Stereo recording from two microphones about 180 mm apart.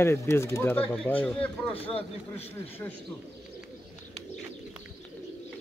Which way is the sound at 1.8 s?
30° left (ahead or behind).